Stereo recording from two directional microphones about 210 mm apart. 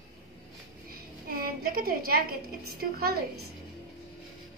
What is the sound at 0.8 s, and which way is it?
A woman's voice, 45° right (ahead or behind).